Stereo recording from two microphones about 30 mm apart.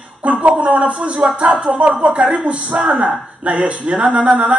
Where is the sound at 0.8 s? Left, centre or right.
Right.